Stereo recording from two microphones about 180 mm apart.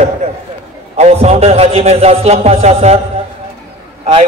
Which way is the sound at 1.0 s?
35° right (ahead or behind).